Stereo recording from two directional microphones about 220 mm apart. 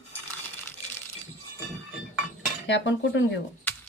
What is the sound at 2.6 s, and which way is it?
Speech, 55° left (ahead or behind).